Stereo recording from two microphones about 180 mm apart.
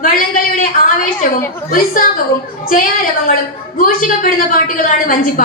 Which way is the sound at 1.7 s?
50° left (ahead or behind).